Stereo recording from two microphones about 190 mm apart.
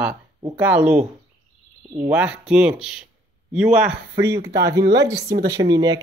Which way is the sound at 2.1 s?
5° right (ahead or behind).